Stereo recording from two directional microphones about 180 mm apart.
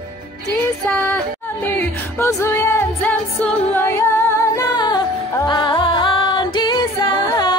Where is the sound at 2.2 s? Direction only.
15° left (ahead or behind).